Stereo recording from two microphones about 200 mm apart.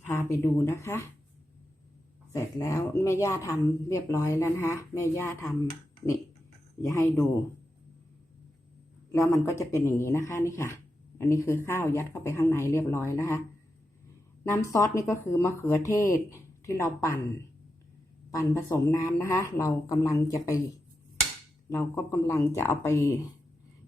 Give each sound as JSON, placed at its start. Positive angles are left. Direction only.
{"t": 0.0, "sound": "speech", "side_deg": 15}
{"t": 2.3, "sound": "speech", "side_deg": 15}
{"t": 6.8, "sound": "speech", "side_deg": 15}
{"t": 9.1, "sound": "speech", "side_deg": 15}
{"t": 14.4, "sound": "speech", "side_deg": 15}
{"t": 21.8, "sound": "speech", "side_deg": 15}